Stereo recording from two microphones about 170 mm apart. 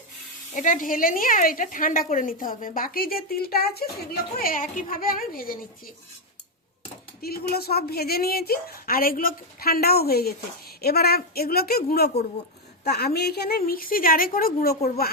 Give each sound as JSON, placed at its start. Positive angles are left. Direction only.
{"t": 0.5, "sound": "a woman's voice", "side_deg": 50}
{"t": 7.2, "sound": "a woman's voice", "side_deg": 65}